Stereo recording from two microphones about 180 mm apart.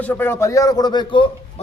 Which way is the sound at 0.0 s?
10° left (ahead or behind).